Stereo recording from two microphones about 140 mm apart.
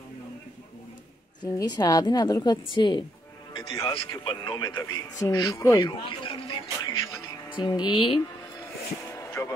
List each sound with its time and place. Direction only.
1.4 s a woman's voice: 30° left (ahead or behind)
7.4 s speech: 35° left (ahead or behind)
9.1 s music: 20° left (ahead or behind)